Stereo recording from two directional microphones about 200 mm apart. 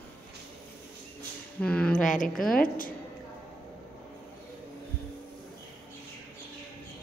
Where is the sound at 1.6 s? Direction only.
5° left (ahead or behind).